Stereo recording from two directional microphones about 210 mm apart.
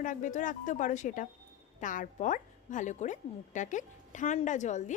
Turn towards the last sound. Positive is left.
turn(degrees=35)  # may be behind; listen again after turning